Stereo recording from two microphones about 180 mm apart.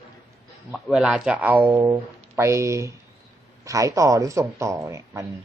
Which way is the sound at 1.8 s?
20° right (ahead or behind).